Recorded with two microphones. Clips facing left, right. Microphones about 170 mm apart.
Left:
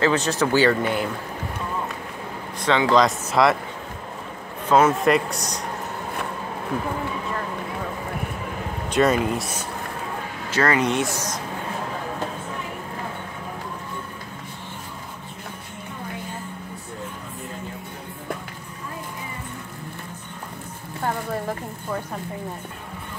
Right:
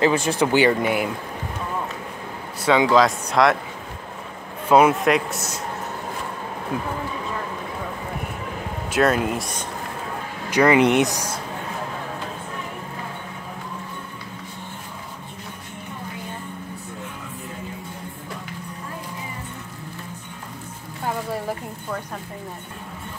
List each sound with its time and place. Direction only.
0.0 s speech: 10° right (ahead or behind)
2.6 s speech: 10° right (ahead or behind)
4.6 s speech: 10° right (ahead or behind)
4.9 s speech: centre (ahead or behind)
8.9 s speech: centre (ahead or behind)
10.5 s speech: 15° right (ahead or behind)